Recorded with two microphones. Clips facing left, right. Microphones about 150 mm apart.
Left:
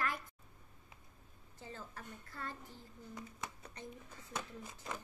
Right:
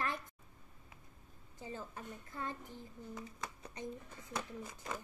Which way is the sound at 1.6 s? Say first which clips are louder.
Right 4 dB; 15° right (ahead or behind).